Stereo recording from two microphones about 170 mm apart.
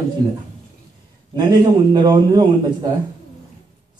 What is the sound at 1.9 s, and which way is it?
Speech, 25° right (ahead or behind).